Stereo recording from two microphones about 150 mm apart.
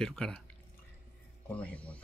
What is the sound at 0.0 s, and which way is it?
Speech, 5° left (ahead or behind).